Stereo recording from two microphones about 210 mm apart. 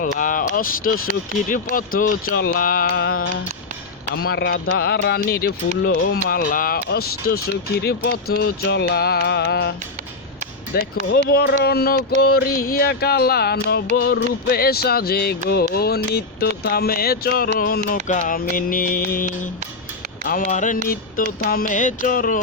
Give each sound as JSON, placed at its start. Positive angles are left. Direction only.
{"t": 0.0, "sound": "mantra", "side_deg": 40}
{"t": 1.5, "sound": "speech", "side_deg": 40}
{"t": 10.8, "sound": "speech", "side_deg": 45}
{"t": 17.8, "sound": "mantra", "side_deg": 40}
{"t": 20.8, "sound": "speech", "side_deg": 45}
{"t": 21.4, "sound": "mantra", "side_deg": 40}